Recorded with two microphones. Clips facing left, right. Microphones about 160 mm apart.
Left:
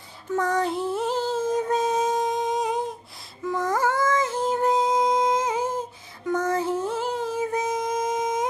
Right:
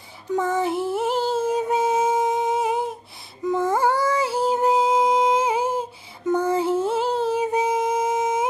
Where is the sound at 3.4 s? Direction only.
25° right (ahead or behind).